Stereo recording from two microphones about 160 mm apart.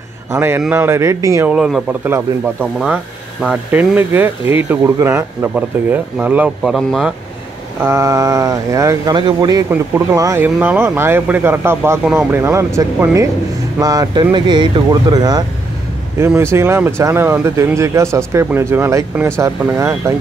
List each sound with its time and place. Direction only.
0.3 s speech: 15° right (ahead or behind)
1.5 s speech: 5° right (ahead or behind)
7.8 s speech: 15° right (ahead or behind)
16.2 s speech: 15° right (ahead or behind)